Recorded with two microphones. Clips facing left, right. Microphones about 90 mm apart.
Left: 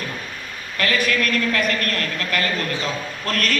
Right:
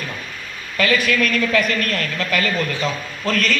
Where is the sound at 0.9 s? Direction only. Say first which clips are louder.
Right 1 dB; 40° left (ahead or behind).